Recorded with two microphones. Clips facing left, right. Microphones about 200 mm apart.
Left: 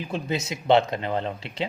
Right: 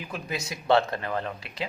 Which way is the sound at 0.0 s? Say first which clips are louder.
Left 6 dB; 25° left (ahead or behind).